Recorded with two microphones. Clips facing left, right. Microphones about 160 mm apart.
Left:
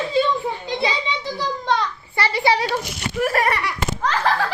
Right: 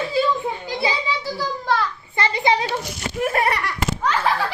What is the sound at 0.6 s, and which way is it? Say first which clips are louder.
Children playing: even; 5° right (ahead or behind).